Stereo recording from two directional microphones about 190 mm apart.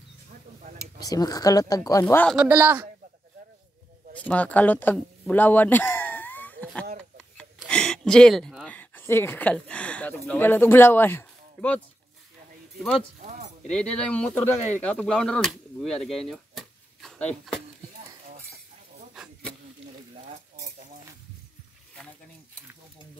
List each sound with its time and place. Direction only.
0.9 s a woman's voice: 20° left (ahead or behind)
2.3 s a man's voice: 10° right (ahead or behind)
4.1 s speech: 5° left (ahead or behind)
13.2 s keys jangling: 40° right (ahead or behind)
13.7 s speech: 5° left (ahead or behind)